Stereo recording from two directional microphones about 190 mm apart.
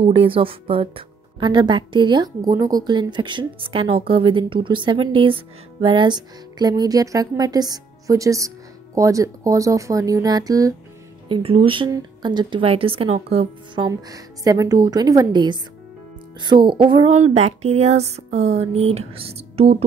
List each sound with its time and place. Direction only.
0.0 s speech: 30° right (ahead or behind)